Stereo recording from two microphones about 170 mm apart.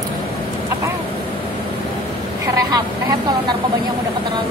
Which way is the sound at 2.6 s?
25° right (ahead or behind).